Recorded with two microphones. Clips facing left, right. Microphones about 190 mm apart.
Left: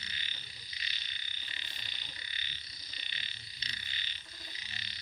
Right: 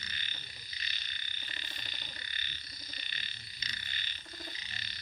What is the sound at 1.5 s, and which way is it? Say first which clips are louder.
Frog: right 3 dB; 50° right (ahead or behind).